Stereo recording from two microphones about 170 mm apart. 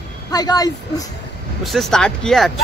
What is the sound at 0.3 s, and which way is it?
Speech, 25° left (ahead or behind).